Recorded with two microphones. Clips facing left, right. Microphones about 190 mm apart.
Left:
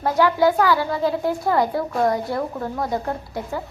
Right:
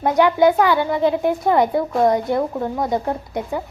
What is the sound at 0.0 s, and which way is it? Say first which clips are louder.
A woman's voice: right 3 dB; 20° right (ahead or behind).